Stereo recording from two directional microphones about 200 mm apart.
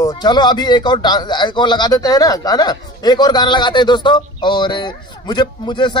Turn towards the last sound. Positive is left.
turn(degrees=20)  # may be behind; listen again after turning